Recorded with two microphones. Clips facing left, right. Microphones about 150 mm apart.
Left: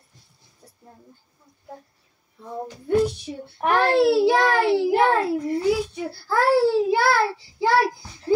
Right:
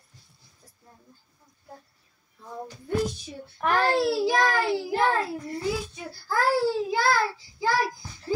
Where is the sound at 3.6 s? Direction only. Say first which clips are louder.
Left 5 dB; 65° left (ahead or behind).